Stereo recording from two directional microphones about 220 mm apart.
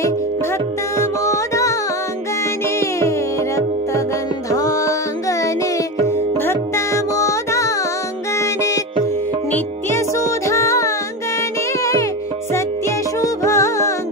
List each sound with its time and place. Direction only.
0.9 s music: 15° left (ahead or behind)
2.8 s music: 15° left (ahead or behind)
6.4 s music: 15° left (ahead or behind)
13.2 s music: 15° left (ahead or behind)